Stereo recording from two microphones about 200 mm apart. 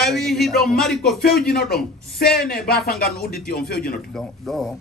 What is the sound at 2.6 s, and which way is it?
Speech, 50° left (ahead or behind).